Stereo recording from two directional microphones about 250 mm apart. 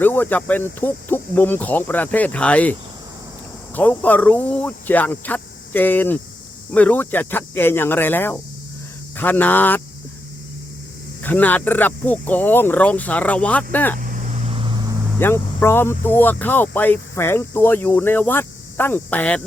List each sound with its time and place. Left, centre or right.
0.0 s speech: centre
3.8 s speech: centre
11.2 s speech: centre
14.0 s vehicle: right
15.2 s speech: centre